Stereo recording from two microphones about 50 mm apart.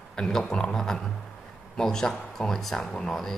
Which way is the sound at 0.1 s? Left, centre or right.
Centre.